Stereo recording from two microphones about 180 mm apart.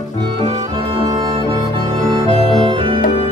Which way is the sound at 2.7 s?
30° right (ahead or behind).